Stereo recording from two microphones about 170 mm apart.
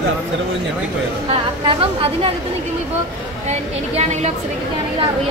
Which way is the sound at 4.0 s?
40° right (ahead or behind).